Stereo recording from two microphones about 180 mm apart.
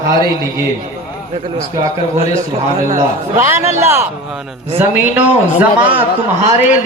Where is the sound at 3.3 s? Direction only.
15° right (ahead or behind).